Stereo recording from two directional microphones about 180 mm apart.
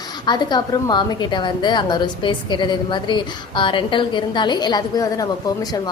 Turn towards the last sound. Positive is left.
turn(degrees=20)  # may be behind; listen again after turning